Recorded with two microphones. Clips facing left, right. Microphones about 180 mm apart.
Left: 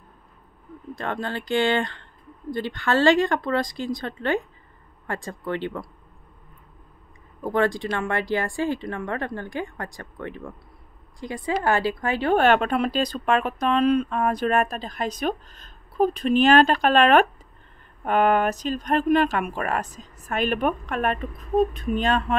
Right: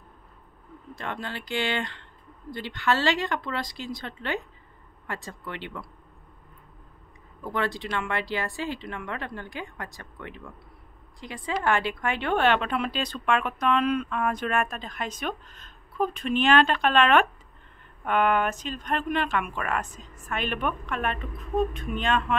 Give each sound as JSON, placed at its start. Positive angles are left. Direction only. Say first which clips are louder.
{"t": 0.9, "sound": "speech", "louder": "left 6 dB", "side_deg": 50}
{"t": 7.4, "sound": "speech", "louder": "left 7 dB", "side_deg": 45}
{"t": 11.5, "sound": "speech", "louder": "left 3 dB", "side_deg": 35}